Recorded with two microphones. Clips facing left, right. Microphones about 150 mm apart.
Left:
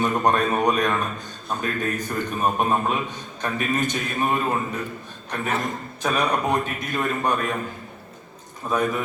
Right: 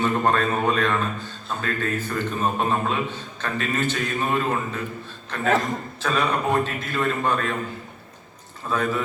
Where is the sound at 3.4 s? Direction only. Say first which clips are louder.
Left 2 dB; 15° left (ahead or behind).